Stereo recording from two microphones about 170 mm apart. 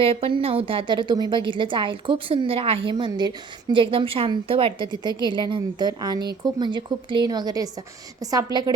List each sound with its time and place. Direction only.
0.0 s a woman's voice: 35° right (ahead or behind)